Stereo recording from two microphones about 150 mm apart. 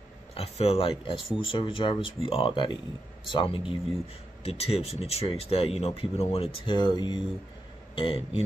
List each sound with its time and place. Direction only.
0.3 s speech: 40° left (ahead or behind)